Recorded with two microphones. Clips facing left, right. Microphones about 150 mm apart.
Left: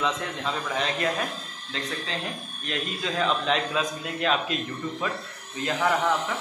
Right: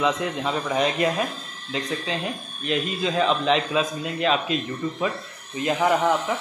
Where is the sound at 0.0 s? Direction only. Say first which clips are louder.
Right 5 dB; 15° right (ahead or behind).